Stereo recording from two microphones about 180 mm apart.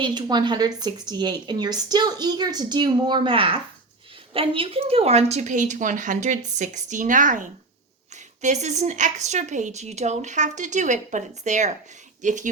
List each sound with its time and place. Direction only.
0.0 s speech: 25° right (ahead or behind); by 12.5 s 45° right (ahead or behind)